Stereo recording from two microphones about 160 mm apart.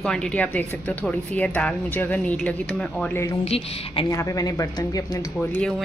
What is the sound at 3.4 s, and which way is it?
Speech, 40° left (ahead or behind).